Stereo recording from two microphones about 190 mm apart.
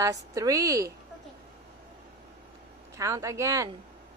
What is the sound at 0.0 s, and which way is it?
Speech, 15° right (ahead or behind).